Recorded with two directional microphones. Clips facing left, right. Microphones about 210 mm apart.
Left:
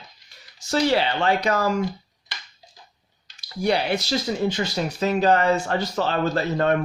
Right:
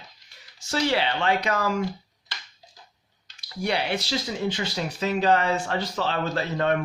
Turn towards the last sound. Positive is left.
turn(degrees=45)  # may be behind; listen again after turning